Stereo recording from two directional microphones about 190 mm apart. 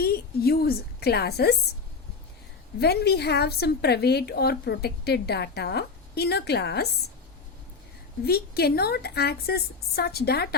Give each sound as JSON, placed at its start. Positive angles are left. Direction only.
{"t": 0.0, "sound": "a woman's voice", "side_deg": 55}
{"t": 2.8, "sound": "a woman's voice", "side_deg": 60}
{"t": 8.2, "sound": "a woman's voice", "side_deg": 55}